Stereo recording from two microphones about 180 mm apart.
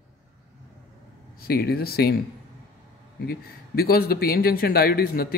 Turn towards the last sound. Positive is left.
turn(degrees=55)  # may be behind; listen again after turning